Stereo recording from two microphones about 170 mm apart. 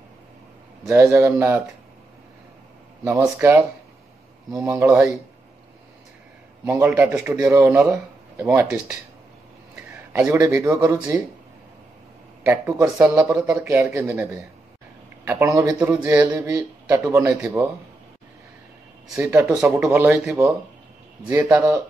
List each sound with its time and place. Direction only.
0.8 s a man's voice: 15° right (ahead or behind)
3.0 s a man's voice: 10° right (ahead or behind)
4.6 s a man's voice: 10° right (ahead or behind)
6.6 s a man's voice: 15° right (ahead or behind)
10.1 s a man's voice: 15° right (ahead or behind)
12.4 s a man's voice: 15° right (ahead or behind)
19.5 s speech: centre (ahead or behind)
19.9 s a man's voice: 15° right (ahead or behind)